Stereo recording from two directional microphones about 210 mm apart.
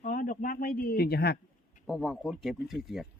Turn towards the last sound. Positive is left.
turn(degrees=0)  # may be behind; listen again after turning